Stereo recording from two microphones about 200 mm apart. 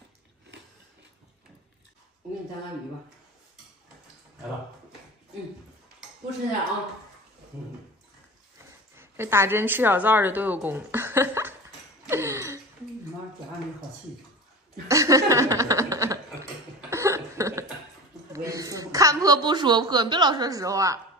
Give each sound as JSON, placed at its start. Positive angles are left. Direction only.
{"t": 8.9, "sound": "a woman's voice", "side_deg": -10}
{"t": 12.1, "sound": "gasp", "side_deg": -15}
{"t": 14.9, "sound": "speech", "side_deg": -15}
{"t": 16.9, "sound": "cough", "side_deg": -15}
{"t": 18.3, "sound": "a woman's voice", "side_deg": -15}